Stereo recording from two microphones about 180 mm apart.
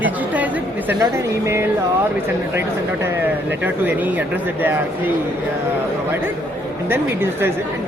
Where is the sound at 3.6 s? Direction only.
10° right (ahead or behind).